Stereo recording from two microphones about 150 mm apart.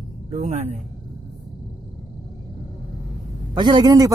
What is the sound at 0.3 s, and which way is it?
Speech, 50° right (ahead or behind).